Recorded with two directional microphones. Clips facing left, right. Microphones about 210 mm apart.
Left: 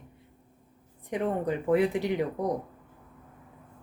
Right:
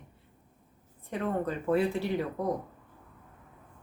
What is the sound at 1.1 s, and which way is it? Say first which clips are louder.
Speech: left 3 dB; 15° left (ahead or behind).